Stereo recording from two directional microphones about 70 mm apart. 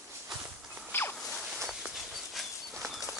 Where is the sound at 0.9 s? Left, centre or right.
Left.